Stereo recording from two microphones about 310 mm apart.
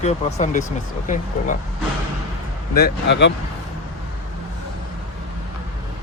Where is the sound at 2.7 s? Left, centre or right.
Left.